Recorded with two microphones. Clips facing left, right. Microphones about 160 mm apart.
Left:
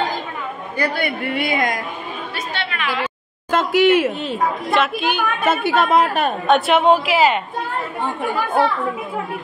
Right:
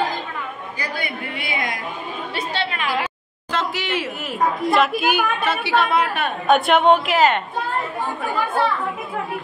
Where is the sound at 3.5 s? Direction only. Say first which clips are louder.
Left 10 dB; 50° left (ahead or behind).